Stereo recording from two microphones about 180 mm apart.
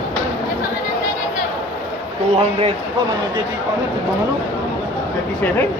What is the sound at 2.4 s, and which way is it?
Speech, 35° right (ahead or behind).